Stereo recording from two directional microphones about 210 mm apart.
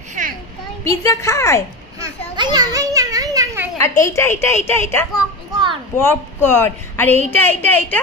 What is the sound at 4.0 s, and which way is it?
Speech, 15° left (ahead or behind).